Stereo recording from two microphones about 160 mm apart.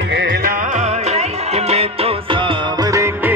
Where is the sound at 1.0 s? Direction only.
40° right (ahead or behind).